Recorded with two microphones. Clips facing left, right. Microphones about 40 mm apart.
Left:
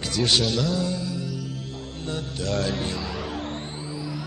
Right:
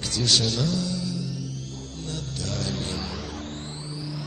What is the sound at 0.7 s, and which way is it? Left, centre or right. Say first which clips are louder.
Speech: left 2 dB; left.